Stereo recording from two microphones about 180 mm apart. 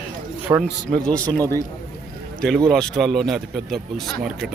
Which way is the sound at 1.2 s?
10° left (ahead or behind).